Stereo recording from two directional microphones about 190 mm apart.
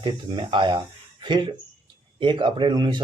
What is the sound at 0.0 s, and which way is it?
A man's voice, 25° right (ahead or behind).